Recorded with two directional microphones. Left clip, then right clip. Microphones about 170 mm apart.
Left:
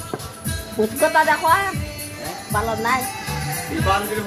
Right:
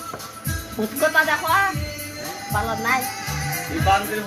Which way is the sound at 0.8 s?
25° left (ahead or behind).